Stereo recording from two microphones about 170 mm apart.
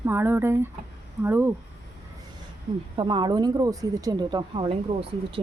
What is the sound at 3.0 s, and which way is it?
Speech, 30° right (ahead or behind).